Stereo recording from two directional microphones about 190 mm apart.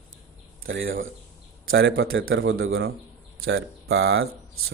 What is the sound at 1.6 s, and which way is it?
Speech, 65° right (ahead or behind).